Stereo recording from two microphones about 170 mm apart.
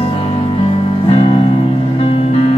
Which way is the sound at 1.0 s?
35° left (ahead or behind).